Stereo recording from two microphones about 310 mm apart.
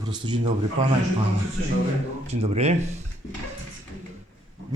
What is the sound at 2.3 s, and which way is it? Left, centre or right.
Speech, right.